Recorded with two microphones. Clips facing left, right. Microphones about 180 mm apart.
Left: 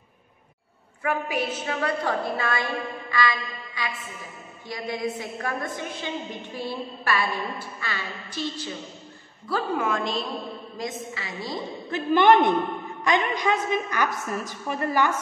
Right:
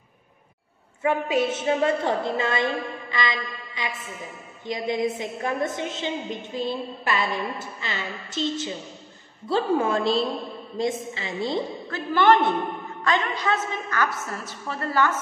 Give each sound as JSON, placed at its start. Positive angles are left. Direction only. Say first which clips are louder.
{"t": 1.0, "sound": "a woman's voice", "louder": "right 4 dB", "side_deg": -25}
{"t": 11.9, "sound": "a woman's voice", "louder": "left 1 dB", "side_deg": 20}